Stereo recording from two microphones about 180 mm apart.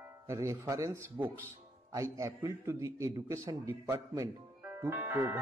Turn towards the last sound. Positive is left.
turn(degrees=-15)  # may be behind; listen again after turning